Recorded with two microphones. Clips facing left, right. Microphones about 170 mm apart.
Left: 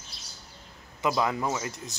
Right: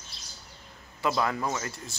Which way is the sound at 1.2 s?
15° left (ahead or behind).